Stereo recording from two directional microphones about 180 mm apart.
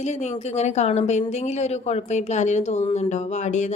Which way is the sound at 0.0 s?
40° left (ahead or behind).